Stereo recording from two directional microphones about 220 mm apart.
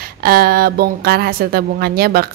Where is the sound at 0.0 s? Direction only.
45° right (ahead or behind).